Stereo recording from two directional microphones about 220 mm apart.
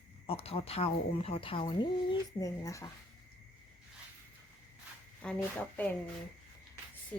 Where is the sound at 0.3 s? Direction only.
25° left (ahead or behind).